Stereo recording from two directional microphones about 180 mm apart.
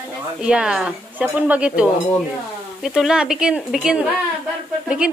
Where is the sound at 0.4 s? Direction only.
5° right (ahead or behind).